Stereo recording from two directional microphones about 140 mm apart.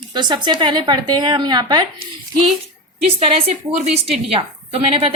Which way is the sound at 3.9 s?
45° right (ahead or behind).